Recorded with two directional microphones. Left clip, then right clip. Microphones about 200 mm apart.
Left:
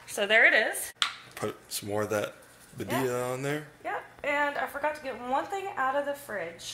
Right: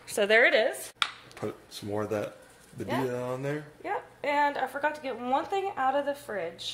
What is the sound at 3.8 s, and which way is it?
A woman's voice, 65° right (ahead or behind).